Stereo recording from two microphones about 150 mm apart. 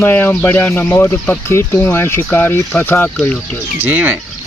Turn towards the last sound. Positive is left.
turn(degrees=-10)  # may be behind; listen again after turning